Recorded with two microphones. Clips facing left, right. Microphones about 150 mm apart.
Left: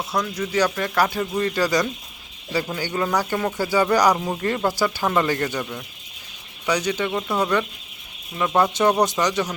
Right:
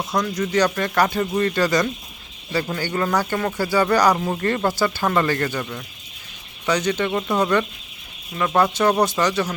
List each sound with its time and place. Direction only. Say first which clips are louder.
0.1 s speech: right 3 dB; 5° left (ahead or behind)